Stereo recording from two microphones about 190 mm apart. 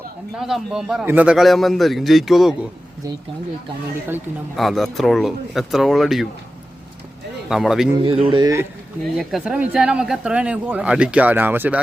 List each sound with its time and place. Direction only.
0.3 s speech: centre (ahead or behind)
4.5 s speech: centre (ahead or behind)
7.5 s speech: centre (ahead or behind)
8.0 s speech: 25° right (ahead or behind)
9.1 s speech: 5° right (ahead or behind)